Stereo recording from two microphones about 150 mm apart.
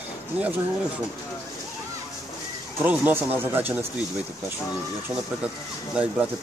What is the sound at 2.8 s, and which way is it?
Speech, 10° right (ahead or behind).